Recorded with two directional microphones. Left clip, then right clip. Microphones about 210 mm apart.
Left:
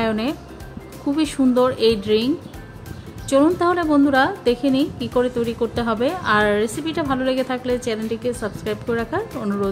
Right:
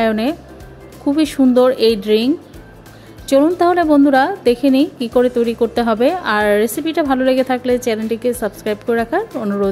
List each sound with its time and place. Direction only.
0.0 s a woman's voice: 20° right (ahead or behind)